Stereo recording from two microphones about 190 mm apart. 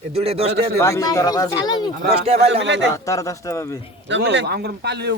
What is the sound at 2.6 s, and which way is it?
Speech, 70° right (ahead or behind).